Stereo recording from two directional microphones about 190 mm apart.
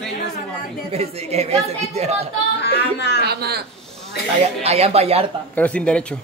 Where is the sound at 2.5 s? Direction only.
65° left (ahead or behind).